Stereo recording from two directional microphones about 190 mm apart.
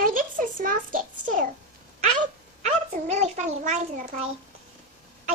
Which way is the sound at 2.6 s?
35° right (ahead or behind).